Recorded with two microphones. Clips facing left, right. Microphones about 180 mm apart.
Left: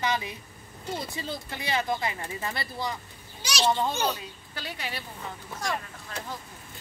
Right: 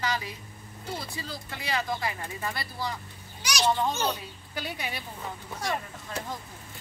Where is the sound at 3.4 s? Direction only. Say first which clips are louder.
Left 1 dB; 25° left (ahead or behind).